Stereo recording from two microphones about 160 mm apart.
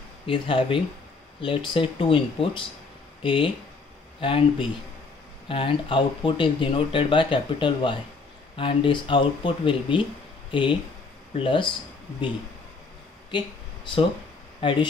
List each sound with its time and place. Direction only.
0.3 s speech: 35° left (ahead or behind)
14.6 s speech: 30° left (ahead or behind)